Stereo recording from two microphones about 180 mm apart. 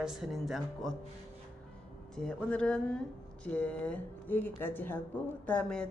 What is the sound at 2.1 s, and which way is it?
A woman's voice, 5° left (ahead or behind).